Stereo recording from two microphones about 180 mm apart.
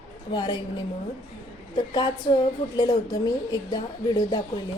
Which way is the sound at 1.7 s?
25° left (ahead or behind).